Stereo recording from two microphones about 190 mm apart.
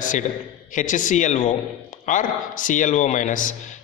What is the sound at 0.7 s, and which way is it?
A man's voice, 45° left (ahead or behind).